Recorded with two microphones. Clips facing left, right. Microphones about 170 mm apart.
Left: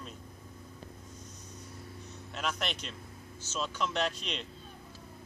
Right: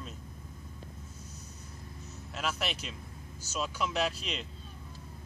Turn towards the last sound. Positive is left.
turn(degrees=-5)  # may be behind; listen again after turning